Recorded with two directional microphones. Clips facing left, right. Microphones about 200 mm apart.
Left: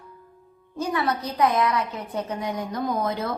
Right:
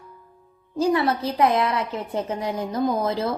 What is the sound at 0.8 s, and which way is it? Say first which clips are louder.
A woman's voice: right 5 dB; 25° right (ahead or behind).